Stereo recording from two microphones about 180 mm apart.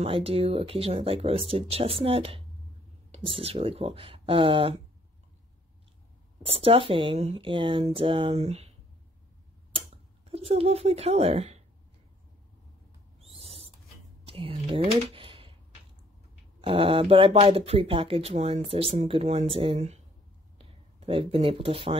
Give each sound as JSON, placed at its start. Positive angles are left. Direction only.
{"t": 0.0, "sound": "speech", "side_deg": -35}
{"t": 6.4, "sound": "speech", "side_deg": -30}
{"t": 10.3, "sound": "speech", "side_deg": -35}
{"t": 13.2, "sound": "owl", "side_deg": -35}
{"t": 14.2, "sound": "a sound", "side_deg": -30}
{"t": 16.6, "sound": "speech", "side_deg": -30}
{"t": 20.5, "sound": "a sound", "side_deg": -30}